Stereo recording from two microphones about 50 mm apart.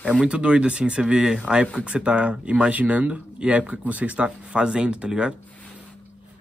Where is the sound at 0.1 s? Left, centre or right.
Centre.